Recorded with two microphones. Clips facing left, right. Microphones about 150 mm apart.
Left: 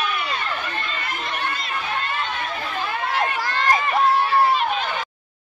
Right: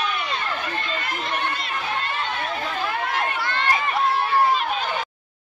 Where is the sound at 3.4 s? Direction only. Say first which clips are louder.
Left 2 dB; 40° left (ahead or behind).